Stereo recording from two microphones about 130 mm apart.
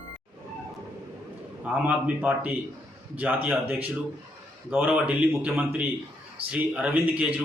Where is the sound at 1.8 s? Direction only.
10° right (ahead or behind).